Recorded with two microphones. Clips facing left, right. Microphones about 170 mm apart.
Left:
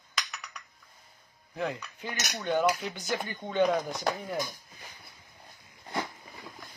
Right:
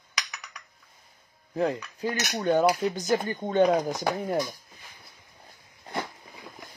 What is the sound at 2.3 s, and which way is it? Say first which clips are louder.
Speech: right 4 dB; 45° right (ahead or behind).